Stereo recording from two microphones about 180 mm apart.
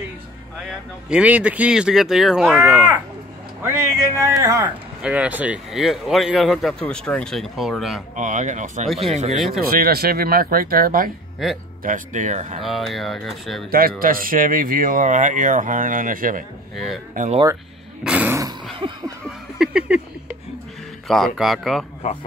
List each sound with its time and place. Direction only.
1.1 s speech: 5° right (ahead or behind)
4.2 s speech: 20° right (ahead or behind)
5.0 s speech: 5° right (ahead or behind)
8.2 s speech: 40° right (ahead or behind)
9.6 s speech: 55° right (ahead or behind); by 12.6 s 40° right (ahead or behind)
12.6 s speech: centre (ahead or behind)
13.7 s speech: 55° right (ahead or behind)
16.7 s speech: centre (ahead or behind)
17.1 s speech: 45° right (ahead or behind)
18.0 s a sound: 10° right (ahead or behind)
18.8 s speech: 25° right (ahead or behind)
19.6 s speech: 5° right (ahead or behind)
21.1 s speech: centre (ahead or behind)